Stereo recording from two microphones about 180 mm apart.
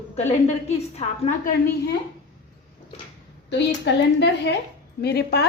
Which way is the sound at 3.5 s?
70° left (ahead or behind).